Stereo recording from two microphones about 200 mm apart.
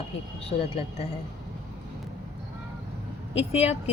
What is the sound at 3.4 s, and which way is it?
Speech, 30° left (ahead or behind).